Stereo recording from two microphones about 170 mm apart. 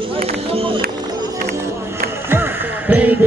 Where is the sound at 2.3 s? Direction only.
10° right (ahead or behind).